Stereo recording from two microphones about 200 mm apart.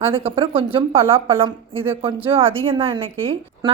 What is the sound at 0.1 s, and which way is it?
A woman's voice, 25° right (ahead or behind).